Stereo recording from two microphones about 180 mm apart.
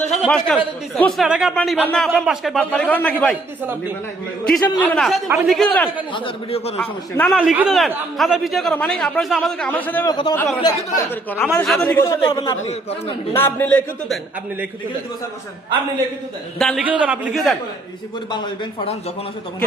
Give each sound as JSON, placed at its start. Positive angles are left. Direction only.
{"t": 0.3, "sound": "speech", "side_deg": 5}
{"t": 4.4, "sound": "speech", "side_deg": 5}
{"t": 6.1, "sound": "a man's voice", "side_deg": 30}
{"t": 7.2, "sound": "a man's voice", "side_deg": 0}
{"t": 10.1, "sound": "a man's voice", "side_deg": 25}
{"t": 12.3, "sound": "a man's voice", "side_deg": 25}
{"t": 13.3, "sound": "a man's voice", "side_deg": 10}
{"t": 16.6, "sound": "speech", "side_deg": 5}
{"t": 16.8, "sound": "a man's voice", "side_deg": -10}
{"t": 18.3, "sound": "a man's voice", "side_deg": 25}